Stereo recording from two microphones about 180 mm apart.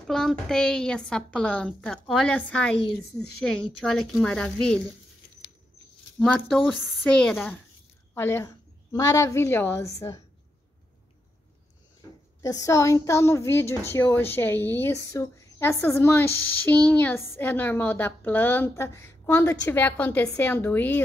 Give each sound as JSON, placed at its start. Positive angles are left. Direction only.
{"t": 0.0, "sound": "a woman's voice", "side_deg": 0}
{"t": 6.1, "sound": "a woman's voice", "side_deg": 5}
{"t": 12.4, "sound": "a woman's voice", "side_deg": 20}